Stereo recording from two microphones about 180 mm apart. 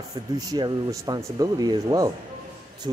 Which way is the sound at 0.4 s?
20° right (ahead or behind).